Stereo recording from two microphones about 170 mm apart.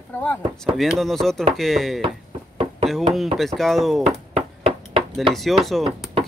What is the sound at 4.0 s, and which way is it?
Ping, 35° right (ahead or behind).